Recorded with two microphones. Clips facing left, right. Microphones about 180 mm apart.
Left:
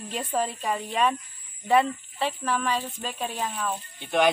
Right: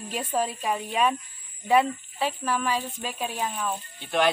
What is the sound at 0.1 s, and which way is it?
Speech, 5° right (ahead or behind).